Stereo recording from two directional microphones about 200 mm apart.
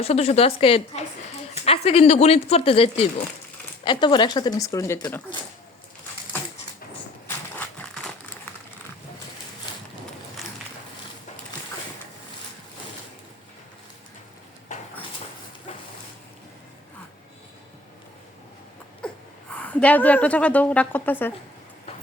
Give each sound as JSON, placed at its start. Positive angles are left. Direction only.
{"t": 0.0, "sound": "a woman's voice", "side_deg": 30}
{"t": 7.3, "sound": "a sound", "side_deg": 10}
{"t": 19.0, "sound": "wheeze", "side_deg": 5}
{"t": 19.5, "sound": "a woman's voice", "side_deg": 5}